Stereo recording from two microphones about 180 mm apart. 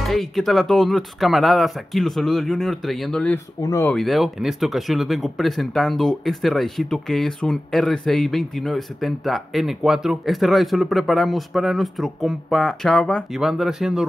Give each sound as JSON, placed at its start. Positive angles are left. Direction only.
{"t": 0.0, "sound": "speech", "side_deg": 0}
{"t": 3.6, "sound": "speech", "side_deg": 15}
{"t": 3.9, "sound": "speech", "side_deg": 0}